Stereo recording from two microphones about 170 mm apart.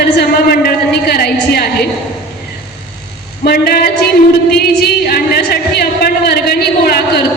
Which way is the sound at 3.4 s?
65° left (ahead or behind).